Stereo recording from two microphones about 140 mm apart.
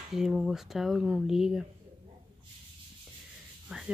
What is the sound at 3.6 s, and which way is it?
Speech, 5° right (ahead or behind).